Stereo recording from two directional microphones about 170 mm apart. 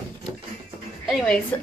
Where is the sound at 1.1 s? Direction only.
5° left (ahead or behind).